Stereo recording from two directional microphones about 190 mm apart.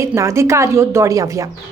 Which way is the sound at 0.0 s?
15° right (ahead or behind).